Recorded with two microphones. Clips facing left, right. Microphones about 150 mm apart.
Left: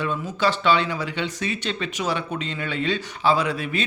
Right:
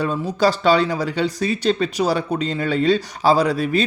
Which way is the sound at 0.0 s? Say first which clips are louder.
Right 5 dB; 35° right (ahead or behind).